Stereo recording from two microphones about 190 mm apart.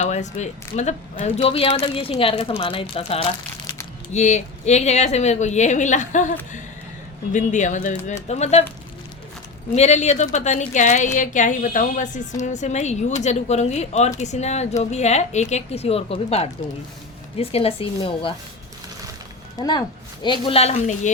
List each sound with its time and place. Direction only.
0.0 s a woman's voice: 40° left (ahead or behind)
9.7 s a woman's voice: 35° left (ahead or behind)
19.5 s a woman's voice: 20° left (ahead or behind); by 21.1 s 35° left (ahead or behind)